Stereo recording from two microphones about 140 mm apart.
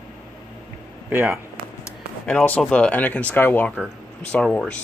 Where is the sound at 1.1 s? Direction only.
15° right (ahead or behind).